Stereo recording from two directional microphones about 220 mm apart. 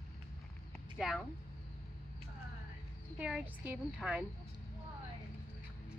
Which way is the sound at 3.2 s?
5° right (ahead or behind).